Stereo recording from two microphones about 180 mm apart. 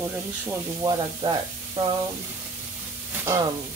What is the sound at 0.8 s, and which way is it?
Speech, 25° right (ahead or behind).